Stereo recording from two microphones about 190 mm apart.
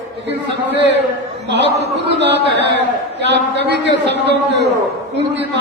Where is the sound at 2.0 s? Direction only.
65° right (ahead or behind).